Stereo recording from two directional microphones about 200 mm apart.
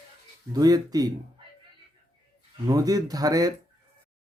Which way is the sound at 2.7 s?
20° right (ahead or behind).